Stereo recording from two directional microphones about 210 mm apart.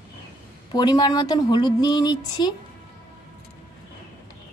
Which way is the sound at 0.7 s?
20° left (ahead or behind).